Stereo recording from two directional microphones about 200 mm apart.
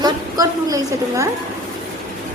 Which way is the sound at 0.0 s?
15° right (ahead or behind).